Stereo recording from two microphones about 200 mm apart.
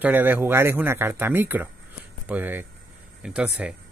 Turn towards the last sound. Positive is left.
turn(degrees=-5)  # may be behind; listen again after turning